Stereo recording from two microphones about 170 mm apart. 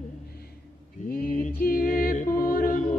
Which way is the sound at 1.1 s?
60° left (ahead or behind).